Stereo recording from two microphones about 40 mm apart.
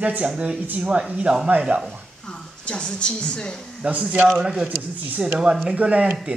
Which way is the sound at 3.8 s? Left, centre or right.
Right.